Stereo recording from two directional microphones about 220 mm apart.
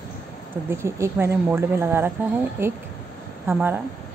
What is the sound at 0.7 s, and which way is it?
Speech, 10° right (ahead or behind).